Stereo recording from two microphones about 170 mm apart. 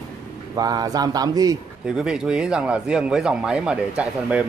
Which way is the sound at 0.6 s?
20° right (ahead or behind).